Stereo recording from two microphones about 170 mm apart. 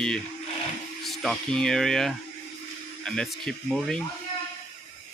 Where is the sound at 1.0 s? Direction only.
Centre (ahead or behind).